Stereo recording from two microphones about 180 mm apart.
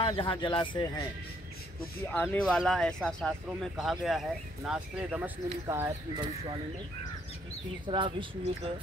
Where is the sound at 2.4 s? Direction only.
Centre (ahead or behind); by 6.2 s 15° right (ahead or behind).